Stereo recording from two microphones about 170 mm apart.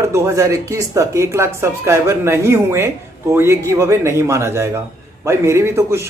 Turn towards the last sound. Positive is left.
turn(degrees=-15)  # may be behind; listen again after turning